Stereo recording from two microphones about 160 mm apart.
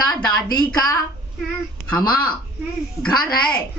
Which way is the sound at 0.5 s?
25° left (ahead or behind).